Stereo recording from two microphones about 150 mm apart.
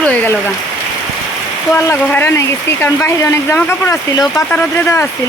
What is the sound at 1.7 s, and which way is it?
Speech, 15° left (ahead or behind).